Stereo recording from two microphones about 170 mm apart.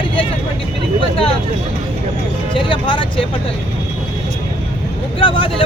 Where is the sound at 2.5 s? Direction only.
30° left (ahead or behind).